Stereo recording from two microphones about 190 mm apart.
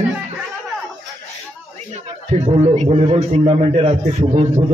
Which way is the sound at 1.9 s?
35° right (ahead or behind).